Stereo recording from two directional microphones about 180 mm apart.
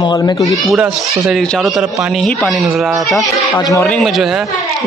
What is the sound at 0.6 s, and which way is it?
A man's voice, 5° right (ahead or behind).